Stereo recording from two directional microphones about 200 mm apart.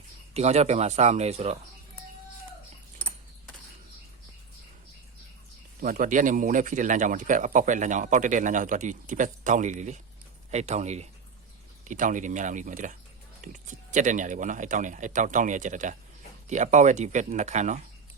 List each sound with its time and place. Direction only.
0.3 s speech: 35° right (ahead or behind)
5.8 s speech: 40° right (ahead or behind)